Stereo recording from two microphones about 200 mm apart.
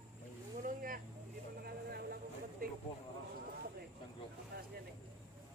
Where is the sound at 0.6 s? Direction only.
45° right (ahead or behind).